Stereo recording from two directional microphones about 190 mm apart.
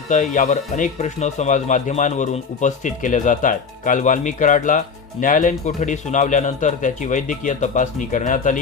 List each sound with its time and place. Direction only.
0.1 s speech: 40° left (ahead or behind)